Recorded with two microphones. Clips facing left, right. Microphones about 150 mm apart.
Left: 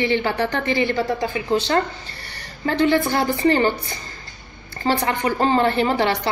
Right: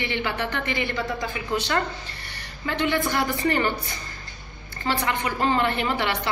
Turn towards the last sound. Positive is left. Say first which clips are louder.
# left 6 dB
turn(degrees=35)  # may be behind; listen again after turning